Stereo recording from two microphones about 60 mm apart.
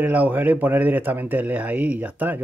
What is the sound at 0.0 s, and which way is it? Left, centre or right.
Speech, right.